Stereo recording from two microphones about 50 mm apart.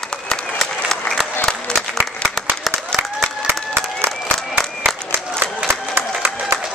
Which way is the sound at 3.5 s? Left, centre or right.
Right.